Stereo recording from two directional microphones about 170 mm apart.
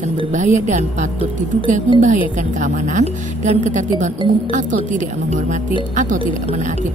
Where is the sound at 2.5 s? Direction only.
45° right (ahead or behind).